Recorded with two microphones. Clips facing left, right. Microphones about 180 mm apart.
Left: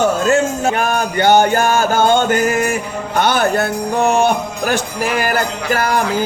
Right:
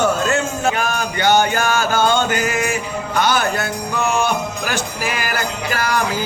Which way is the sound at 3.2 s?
55° left (ahead or behind).